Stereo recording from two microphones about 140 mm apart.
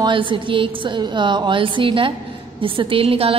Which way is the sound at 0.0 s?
35° right (ahead or behind).